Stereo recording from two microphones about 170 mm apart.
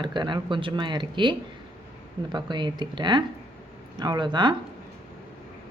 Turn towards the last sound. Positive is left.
turn(degrees=-25)  # may be behind; listen again after turning